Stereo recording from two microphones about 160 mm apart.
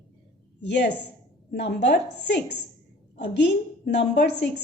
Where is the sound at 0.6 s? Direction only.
90° left.